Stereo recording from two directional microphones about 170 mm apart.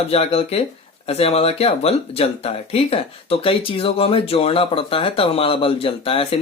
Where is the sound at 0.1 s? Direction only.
35° left (ahead or behind).